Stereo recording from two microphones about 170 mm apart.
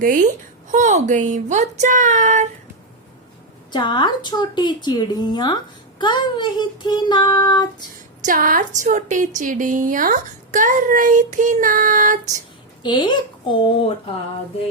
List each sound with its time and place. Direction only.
0.0 s a woman's voice: 55° right (ahead or behind)
3.7 s a woman's voice: 25° left (ahead or behind)
8.2 s a woman's voice: 55° right (ahead or behind)
12.8 s a woman's voice: 25° left (ahead or behind)